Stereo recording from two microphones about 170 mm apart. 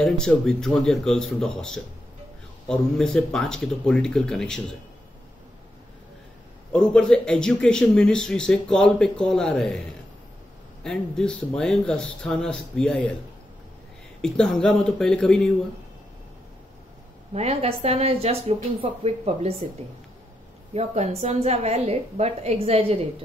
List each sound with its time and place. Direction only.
0.0 s a man's voice: 5° left (ahead or behind)
6.7 s a man's voice: 5° left (ahead or behind)
10.8 s a man's voice: 5° left (ahead or behind)
14.2 s a man's voice: 5° left (ahead or behind)
17.3 s a woman's voice: 40° right (ahead or behind)
20.7 s a woman's voice: 40° right (ahead or behind)